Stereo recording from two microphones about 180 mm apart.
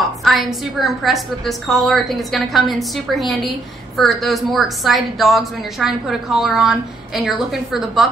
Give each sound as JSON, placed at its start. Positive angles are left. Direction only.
{"t": 0.2, "sound": "a woman's voice", "side_deg": 0}